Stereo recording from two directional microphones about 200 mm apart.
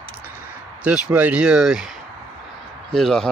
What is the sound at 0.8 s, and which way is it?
Speech, 5° right (ahead or behind).